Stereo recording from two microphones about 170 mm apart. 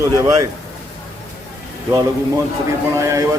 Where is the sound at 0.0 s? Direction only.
20° right (ahead or behind).